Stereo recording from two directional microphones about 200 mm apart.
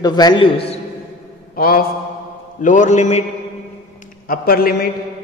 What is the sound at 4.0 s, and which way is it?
Speech, 45° left (ahead or behind).